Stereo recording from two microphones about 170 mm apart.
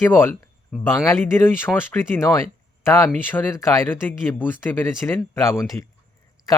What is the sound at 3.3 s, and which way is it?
Speech, 10° left (ahead or behind).